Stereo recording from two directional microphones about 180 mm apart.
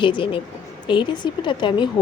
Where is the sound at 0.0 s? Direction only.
30° left (ahead or behind).